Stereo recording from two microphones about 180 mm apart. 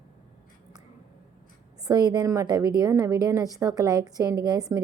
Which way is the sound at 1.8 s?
20° right (ahead or behind).